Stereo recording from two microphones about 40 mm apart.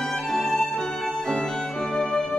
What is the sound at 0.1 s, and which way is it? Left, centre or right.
Music, centre.